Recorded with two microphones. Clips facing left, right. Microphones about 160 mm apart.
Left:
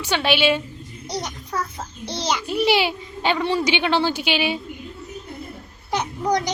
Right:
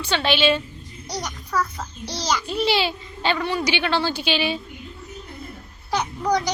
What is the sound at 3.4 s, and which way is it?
A child's voice, 25° left (ahead or behind).